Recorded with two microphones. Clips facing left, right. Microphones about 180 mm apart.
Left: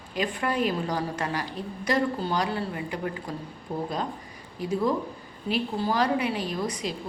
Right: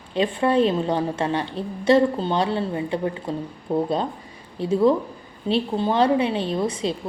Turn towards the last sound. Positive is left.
turn(degrees=-25)  # may be behind; listen again after turning